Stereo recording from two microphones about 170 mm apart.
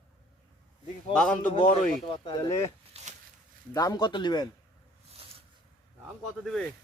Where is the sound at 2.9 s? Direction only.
40° right (ahead or behind).